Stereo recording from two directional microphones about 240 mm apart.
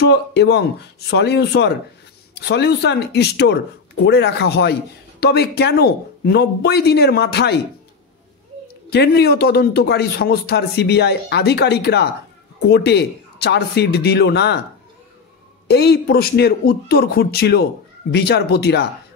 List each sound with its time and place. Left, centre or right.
0.1 s speech: left
8.9 s speech: left
15.7 s speech: left